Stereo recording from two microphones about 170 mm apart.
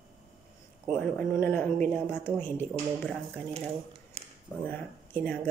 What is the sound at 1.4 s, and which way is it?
Speech, 10° left (ahead or behind).